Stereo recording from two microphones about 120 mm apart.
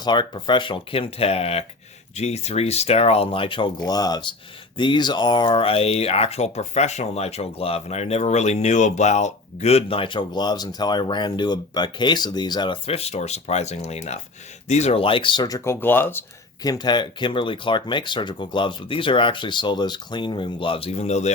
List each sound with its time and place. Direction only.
0.0 s speech: 40° left (ahead or behind); by 16.2 s 15° left (ahead or behind)
16.6 s speech: 35° left (ahead or behind); by 21.3 s 70° left (ahead or behind)